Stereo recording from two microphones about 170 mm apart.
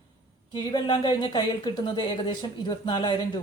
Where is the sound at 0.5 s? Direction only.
25° left (ahead or behind).